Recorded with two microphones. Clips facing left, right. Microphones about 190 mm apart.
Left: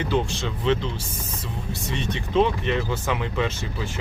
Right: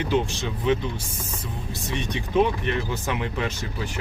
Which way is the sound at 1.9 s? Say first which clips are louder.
Even; 15° right (ahead or behind).